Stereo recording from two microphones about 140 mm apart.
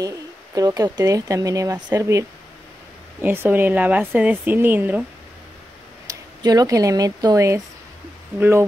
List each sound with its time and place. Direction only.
0.6 s speech: 25° right (ahead or behind)
6.0 s speech: 25° right (ahead or behind)